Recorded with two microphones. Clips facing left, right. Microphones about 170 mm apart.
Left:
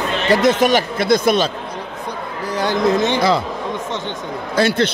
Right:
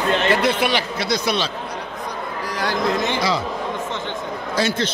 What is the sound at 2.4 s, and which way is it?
Speech, 25° left (ahead or behind).